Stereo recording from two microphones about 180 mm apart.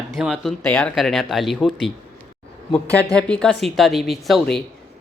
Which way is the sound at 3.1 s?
5° left (ahead or behind).